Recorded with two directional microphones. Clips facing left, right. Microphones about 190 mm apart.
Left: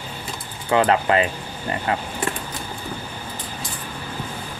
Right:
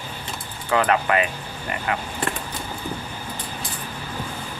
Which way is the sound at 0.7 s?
25° left (ahead or behind).